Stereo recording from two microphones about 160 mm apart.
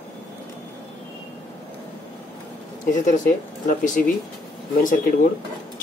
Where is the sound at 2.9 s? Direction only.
50° left (ahead or behind).